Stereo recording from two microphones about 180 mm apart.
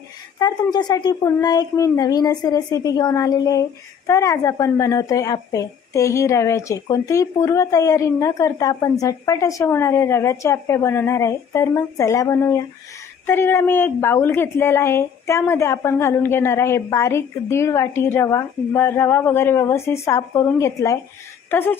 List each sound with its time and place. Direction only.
0.3 s speech: 25° left (ahead or behind)